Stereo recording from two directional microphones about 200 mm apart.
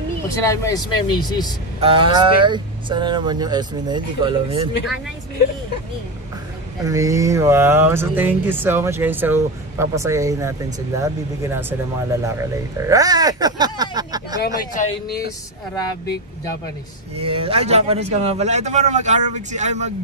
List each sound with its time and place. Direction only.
0.3 s speech: 15° left (ahead or behind)
1.8 s speech: 25° right (ahead or behind)
6.8 s speech: 15° right (ahead or behind)
14.4 s speech: 40° left (ahead or behind)
17.2 s speech: 30° right (ahead or behind)